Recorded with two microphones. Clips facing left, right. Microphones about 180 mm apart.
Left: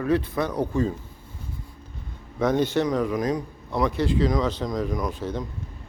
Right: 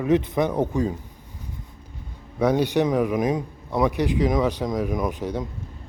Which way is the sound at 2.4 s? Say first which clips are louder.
Right 2 dB; 10° right (ahead or behind).